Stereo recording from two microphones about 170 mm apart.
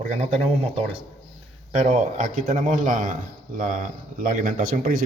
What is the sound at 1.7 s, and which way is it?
A man's voice, 45° right (ahead or behind).